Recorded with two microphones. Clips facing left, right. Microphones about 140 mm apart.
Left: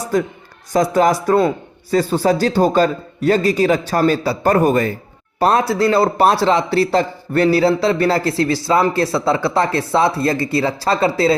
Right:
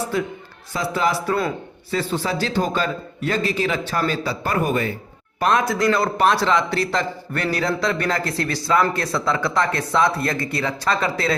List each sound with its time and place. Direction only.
0.1 s a man's voice: 40° left (ahead or behind)